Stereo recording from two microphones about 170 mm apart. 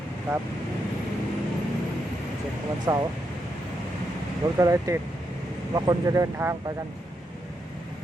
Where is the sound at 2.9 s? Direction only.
20° right (ahead or behind).